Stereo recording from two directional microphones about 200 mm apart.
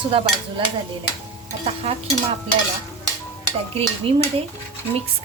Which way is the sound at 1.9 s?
30° right (ahead or behind).